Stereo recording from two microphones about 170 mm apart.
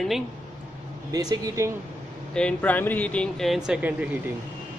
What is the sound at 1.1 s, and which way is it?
Speech, 20° right (ahead or behind).